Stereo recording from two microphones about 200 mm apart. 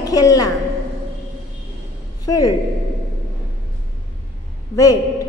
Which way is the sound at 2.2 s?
20° left (ahead or behind).